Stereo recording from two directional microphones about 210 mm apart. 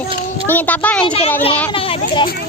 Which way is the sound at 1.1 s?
30° left (ahead or behind).